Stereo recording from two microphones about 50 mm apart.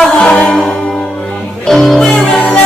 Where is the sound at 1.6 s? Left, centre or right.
Centre.